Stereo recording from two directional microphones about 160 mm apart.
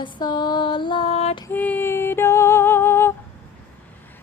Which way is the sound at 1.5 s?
10° left (ahead or behind).